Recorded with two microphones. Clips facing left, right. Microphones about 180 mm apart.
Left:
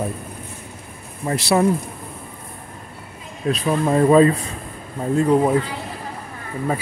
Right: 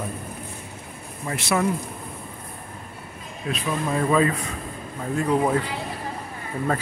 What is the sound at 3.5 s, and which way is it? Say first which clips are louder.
Speech: left 7 dB; 40° left (ahead or behind).